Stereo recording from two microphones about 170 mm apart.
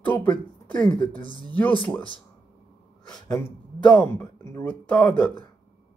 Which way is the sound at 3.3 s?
15° left (ahead or behind).